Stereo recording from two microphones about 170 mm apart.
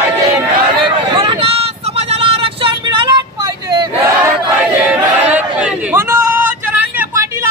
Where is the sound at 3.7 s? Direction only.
25° right (ahead or behind).